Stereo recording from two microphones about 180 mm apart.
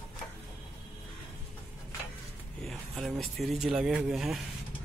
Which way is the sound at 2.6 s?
Centre (ahead or behind).